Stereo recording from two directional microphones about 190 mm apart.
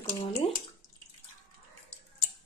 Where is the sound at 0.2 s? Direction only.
30° left (ahead or behind).